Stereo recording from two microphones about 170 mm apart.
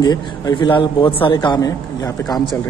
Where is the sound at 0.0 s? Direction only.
25° left (ahead or behind).